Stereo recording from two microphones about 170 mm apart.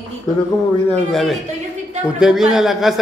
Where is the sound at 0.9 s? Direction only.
Centre (ahead or behind).